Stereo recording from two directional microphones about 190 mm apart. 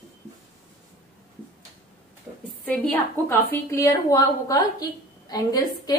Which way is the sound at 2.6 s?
10° left (ahead or behind).